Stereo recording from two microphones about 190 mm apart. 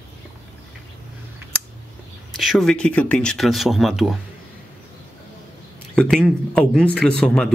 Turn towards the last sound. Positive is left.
turn(degrees=5)  # may be behind; listen again after turning